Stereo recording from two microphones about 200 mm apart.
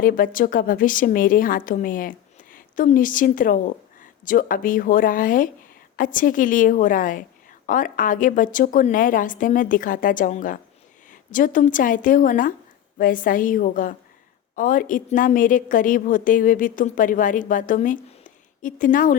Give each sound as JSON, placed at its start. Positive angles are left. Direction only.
{"t": 0.0, "sound": "a woman's voice", "side_deg": 45}